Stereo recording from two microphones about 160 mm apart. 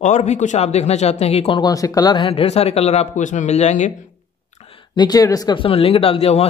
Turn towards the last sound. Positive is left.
turn(degrees=40)  # may be behind; listen again after turning